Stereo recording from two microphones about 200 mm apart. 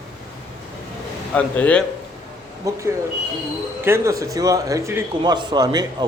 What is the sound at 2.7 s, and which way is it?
Speech, 15° right (ahead or behind).